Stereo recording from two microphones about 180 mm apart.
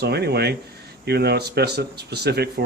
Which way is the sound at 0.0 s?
65° right (ahead or behind).